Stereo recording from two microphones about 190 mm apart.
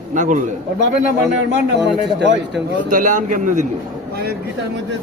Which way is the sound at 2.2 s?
70° right (ahead or behind).